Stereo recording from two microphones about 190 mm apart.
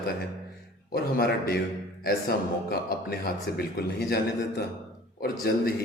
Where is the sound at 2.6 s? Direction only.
50° left (ahead or behind).